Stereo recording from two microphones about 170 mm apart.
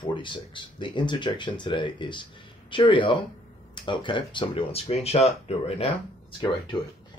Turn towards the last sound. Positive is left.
turn(degrees=30)  # may be behind; listen again after turning